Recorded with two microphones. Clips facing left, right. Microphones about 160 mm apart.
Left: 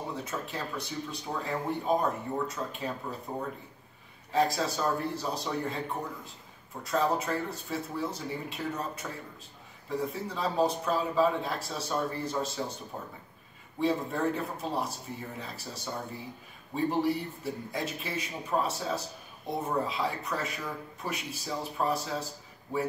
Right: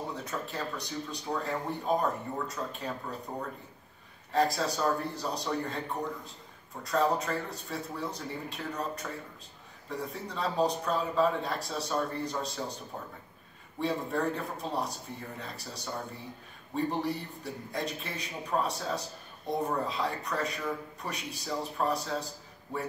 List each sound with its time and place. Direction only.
0.1 s a man's voice: centre (ahead or behind)